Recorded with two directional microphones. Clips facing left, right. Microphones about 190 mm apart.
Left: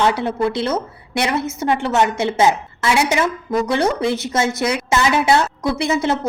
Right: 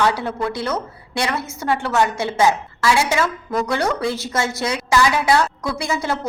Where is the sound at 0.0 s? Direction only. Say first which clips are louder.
Left 3 dB; 20° left (ahead or behind).